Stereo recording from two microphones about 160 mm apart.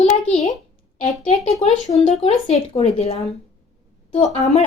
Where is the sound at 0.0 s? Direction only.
45° left (ahead or behind).